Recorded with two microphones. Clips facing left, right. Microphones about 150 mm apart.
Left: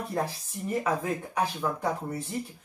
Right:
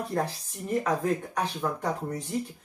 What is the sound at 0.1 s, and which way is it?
Speech, 5° left (ahead or behind).